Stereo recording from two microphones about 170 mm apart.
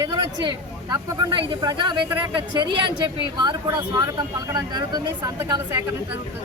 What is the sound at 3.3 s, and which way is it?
Speech, 25° right (ahead or behind).